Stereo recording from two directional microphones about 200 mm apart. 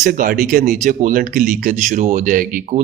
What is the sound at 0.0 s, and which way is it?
Speech, 45° right (ahead or behind).